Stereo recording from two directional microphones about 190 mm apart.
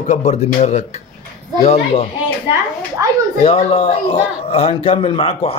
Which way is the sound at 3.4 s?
30° left (ahead or behind).